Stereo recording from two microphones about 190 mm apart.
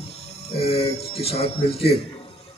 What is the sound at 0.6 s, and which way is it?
Speech, 30° left (ahead or behind).